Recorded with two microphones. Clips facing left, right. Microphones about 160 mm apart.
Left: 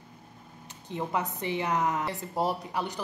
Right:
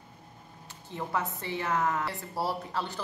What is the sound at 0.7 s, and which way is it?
A woman's voice, 15° left (ahead or behind).